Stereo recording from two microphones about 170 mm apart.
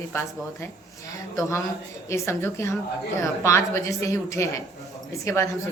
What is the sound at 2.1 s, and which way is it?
A woman's voice, 15° left (ahead or behind).